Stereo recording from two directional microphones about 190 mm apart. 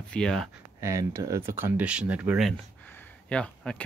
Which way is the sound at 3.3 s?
5° left (ahead or behind).